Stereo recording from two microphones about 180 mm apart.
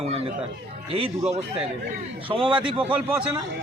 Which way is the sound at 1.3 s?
35° right (ahead or behind).